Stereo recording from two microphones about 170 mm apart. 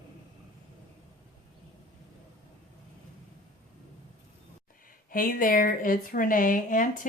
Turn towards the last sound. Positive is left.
turn(degrees=50)  # may be behind; listen again after turning